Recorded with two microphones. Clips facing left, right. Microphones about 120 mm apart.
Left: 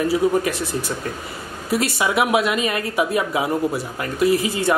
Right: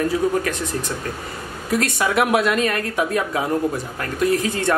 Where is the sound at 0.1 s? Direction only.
10° left (ahead or behind).